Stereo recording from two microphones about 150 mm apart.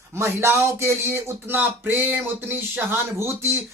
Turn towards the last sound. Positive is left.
turn(degrees=-15)  # may be behind; listen again after turning